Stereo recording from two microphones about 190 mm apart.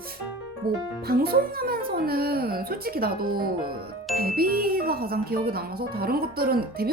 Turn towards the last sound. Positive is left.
turn(degrees=-55)  # may be behind; listen again after turning